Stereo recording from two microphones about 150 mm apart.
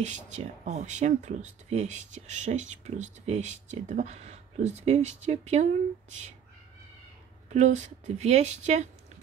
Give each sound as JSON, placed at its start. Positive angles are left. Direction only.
{"t": 0.0, "sound": "speech", "side_deg": -50}
{"t": 7.5, "sound": "speech", "side_deg": -50}